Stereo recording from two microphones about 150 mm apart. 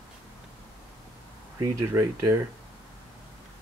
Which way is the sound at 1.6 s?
20° right (ahead or behind).